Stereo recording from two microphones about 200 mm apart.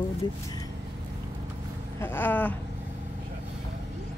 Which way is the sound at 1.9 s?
10° left (ahead or behind).